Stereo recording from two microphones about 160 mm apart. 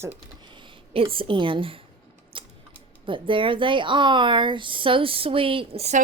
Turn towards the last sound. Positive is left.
turn(degrees=-40)  # may be behind; listen again after turning